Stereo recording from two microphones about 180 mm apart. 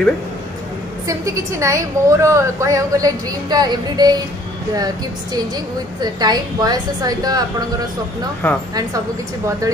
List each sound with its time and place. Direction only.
1.0 s a woman's voice: 20° right (ahead or behind)
5.9 s a woman's voice: 20° right (ahead or behind)
8.4 s speech: 10° left (ahead or behind)